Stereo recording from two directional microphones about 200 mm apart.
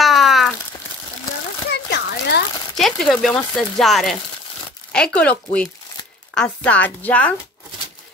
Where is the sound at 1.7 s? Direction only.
55° left (ahead or behind).